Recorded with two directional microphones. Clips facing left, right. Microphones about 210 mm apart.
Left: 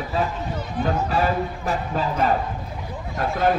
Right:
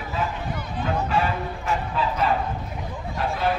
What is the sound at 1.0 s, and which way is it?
Speech, 40° left (ahead or behind).